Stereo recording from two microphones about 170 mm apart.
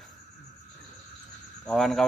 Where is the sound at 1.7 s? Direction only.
Centre (ahead or behind).